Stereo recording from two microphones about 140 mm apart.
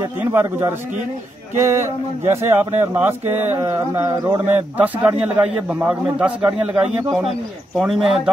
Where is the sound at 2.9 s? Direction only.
15° right (ahead or behind).